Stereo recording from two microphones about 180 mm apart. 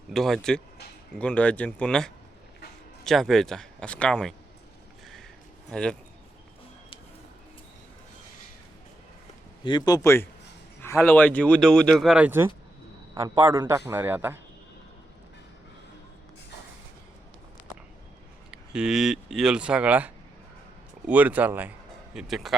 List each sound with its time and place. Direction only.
0.1 s speech: centre (ahead or behind)
5.7 s speech: 5° left (ahead or behind)
9.6 s a man's voice: 25° left (ahead or behind); by 14.3 s 10° right (ahead or behind)
18.5 s a man's voice: 5° right (ahead or behind)